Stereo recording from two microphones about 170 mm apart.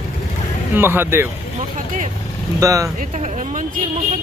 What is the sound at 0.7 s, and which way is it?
Speech, 10° right (ahead or behind).